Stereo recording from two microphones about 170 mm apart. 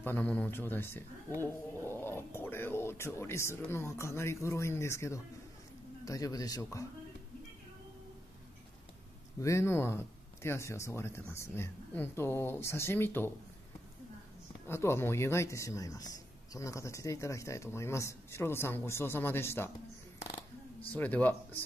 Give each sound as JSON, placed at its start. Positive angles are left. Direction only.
{"t": 0.0, "sound": "a man's voice", "side_deg": 10}
{"t": 9.4, "sound": "a man's voice", "side_deg": 15}
{"t": 14.7, "sound": "a man's voice", "side_deg": 15}
{"t": 20.9, "sound": "a man's voice", "side_deg": 10}